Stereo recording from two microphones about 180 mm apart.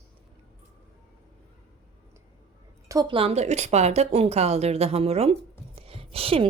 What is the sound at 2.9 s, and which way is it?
A woman's voice, 25° right (ahead or behind).